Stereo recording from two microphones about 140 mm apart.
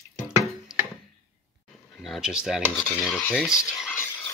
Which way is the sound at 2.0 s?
Centre (ahead or behind).